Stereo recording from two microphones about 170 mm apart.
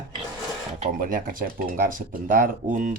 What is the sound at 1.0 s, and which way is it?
Speech, 55° right (ahead or behind).